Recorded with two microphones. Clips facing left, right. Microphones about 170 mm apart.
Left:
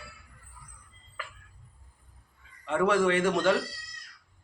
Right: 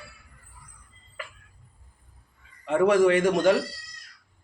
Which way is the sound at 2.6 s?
15° right (ahead or behind).